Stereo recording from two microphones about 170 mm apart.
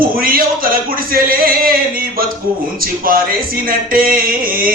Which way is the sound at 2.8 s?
60° right (ahead or behind).